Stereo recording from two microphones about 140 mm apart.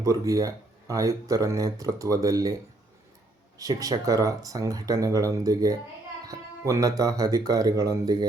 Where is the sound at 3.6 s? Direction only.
25° right (ahead or behind).